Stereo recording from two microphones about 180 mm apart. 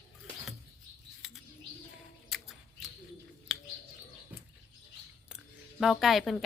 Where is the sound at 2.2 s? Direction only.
Centre (ahead or behind).